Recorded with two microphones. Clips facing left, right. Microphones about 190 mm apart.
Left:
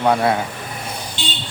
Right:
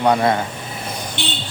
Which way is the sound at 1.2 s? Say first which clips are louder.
Right 3 dB; 65° right (ahead or behind).